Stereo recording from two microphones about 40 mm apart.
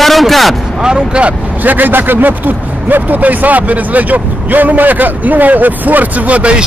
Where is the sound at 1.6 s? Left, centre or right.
Right.